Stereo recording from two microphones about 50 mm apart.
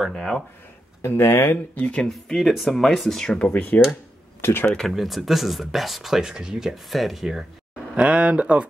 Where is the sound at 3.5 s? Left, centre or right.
Left.